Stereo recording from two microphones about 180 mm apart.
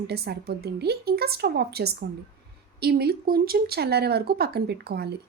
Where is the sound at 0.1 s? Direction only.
65° right (ahead or behind).